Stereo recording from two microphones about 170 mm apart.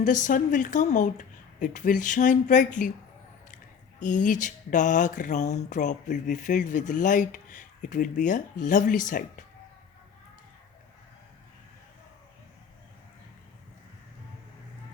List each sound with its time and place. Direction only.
0.0 s speech: 50° left (ahead or behind)
4.0 s speech: 50° left (ahead or behind)